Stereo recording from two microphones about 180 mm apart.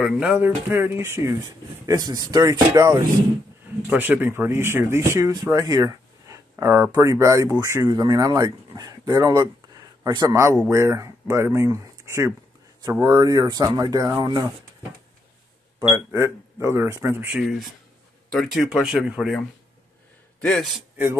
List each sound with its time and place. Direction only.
0.0 s speech: 5° right (ahead or behind)
15.9 s speech: 15° right (ahead or behind); by 20.8 s centre (ahead or behind)